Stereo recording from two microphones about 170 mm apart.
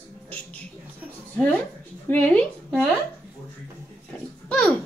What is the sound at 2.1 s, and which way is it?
Speech, 10° left (ahead or behind).